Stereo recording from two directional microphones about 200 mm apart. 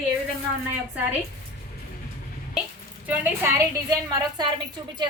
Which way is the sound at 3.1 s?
10° right (ahead or behind).